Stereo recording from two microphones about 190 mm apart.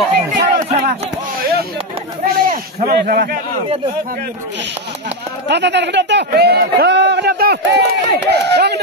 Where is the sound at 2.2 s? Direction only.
50° right (ahead or behind).